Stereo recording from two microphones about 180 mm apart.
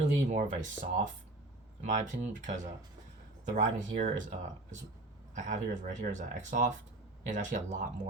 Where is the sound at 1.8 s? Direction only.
45° right (ahead or behind).